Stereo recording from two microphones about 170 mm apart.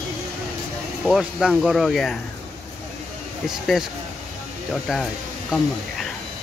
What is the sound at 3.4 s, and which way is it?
Speech, centre (ahead or behind).